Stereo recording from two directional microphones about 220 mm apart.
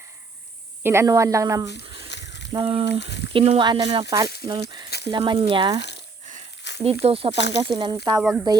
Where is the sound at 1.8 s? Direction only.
25° right (ahead or behind).